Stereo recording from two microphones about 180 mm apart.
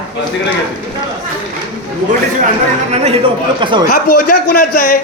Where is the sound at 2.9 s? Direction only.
40° right (ahead or behind).